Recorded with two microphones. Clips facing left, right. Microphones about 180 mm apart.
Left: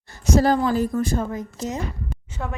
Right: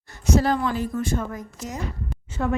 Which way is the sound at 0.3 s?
40° left (ahead or behind).